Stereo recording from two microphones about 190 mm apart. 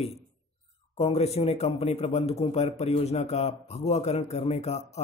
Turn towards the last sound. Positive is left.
turn(degrees=35)  # may be behind; listen again after turning